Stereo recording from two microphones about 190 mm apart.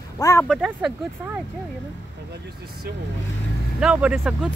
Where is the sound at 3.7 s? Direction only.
5° right (ahead or behind).